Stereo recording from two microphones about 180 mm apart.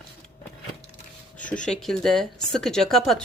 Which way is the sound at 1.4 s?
45° left (ahead or behind).